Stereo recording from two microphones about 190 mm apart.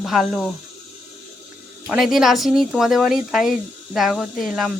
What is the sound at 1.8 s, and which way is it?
Speech, 5° right (ahead or behind).